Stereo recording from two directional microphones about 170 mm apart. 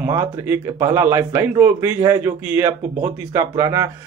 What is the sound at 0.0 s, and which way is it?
Speech, 15° right (ahead or behind).